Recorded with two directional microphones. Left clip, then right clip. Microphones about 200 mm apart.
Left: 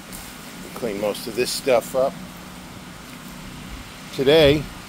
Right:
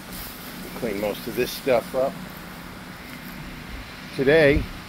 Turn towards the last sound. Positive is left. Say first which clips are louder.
# left 2 dB
turn(degrees=15)  # may be behind; listen again after turning